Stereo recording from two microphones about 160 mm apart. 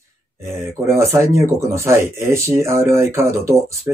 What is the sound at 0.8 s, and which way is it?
Speech, 15° right (ahead or behind).